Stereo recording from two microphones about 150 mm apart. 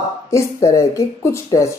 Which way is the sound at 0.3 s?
20° left (ahead or behind).